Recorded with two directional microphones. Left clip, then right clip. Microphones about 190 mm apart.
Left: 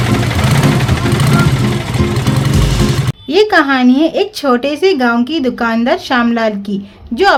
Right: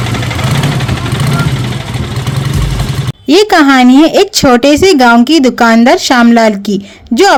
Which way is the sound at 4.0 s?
45° right (ahead or behind).